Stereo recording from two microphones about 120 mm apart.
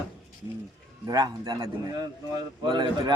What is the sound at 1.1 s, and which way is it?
Speech, 35° right (ahead or behind).